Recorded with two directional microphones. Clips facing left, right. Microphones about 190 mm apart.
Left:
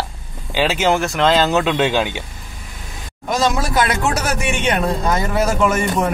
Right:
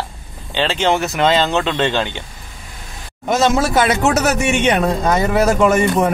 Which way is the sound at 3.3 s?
25° right (ahead or behind).